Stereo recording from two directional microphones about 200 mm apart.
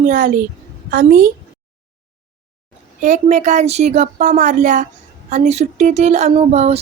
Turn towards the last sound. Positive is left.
turn(degrees=-30)  # may be behind; listen again after turning